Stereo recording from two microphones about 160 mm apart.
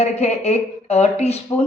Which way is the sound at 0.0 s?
45° left (ahead or behind).